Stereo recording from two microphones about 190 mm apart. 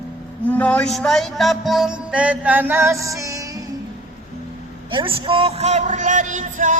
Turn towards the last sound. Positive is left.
turn(degrees=-45)  # may be behind; listen again after turning